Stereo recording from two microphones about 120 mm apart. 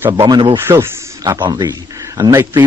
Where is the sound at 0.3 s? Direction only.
45° right (ahead or behind).